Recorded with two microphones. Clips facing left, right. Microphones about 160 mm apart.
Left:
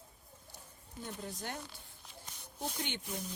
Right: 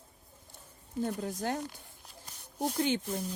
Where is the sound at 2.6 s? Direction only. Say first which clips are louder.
Right 10 dB; 40° right (ahead or behind).